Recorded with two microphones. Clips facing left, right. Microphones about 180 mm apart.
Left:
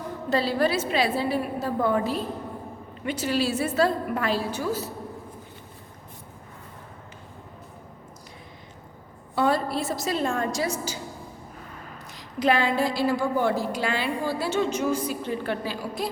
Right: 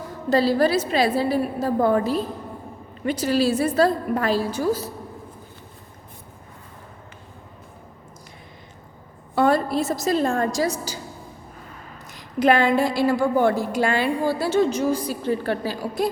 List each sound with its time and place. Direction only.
0.3 s a woman's voice: 40° right (ahead or behind)
9.3 s a woman's voice: 50° right (ahead or behind)
12.1 s a woman's voice: 50° right (ahead or behind)